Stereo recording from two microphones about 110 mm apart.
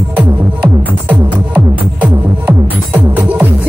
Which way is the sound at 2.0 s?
15° right (ahead or behind).